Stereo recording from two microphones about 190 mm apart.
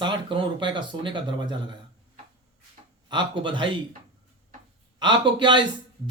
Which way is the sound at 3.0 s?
25° right (ahead or behind).